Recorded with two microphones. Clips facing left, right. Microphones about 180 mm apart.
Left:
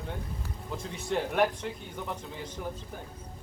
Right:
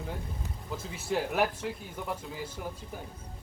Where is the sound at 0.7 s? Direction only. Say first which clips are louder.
Even; 5° right (ahead or behind).